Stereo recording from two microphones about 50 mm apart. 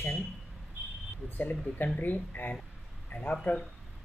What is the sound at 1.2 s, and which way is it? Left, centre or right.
Speech, left.